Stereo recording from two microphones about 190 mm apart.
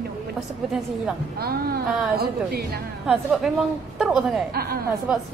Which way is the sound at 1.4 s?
55° right (ahead or behind).